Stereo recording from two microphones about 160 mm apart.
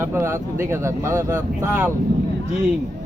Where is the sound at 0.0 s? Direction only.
15° right (ahead or behind).